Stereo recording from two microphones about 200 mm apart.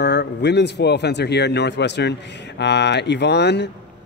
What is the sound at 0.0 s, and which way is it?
Speech, 55° left (ahead or behind).